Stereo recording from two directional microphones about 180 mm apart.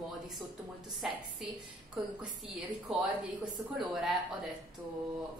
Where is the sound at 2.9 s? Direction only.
5° right (ahead or behind).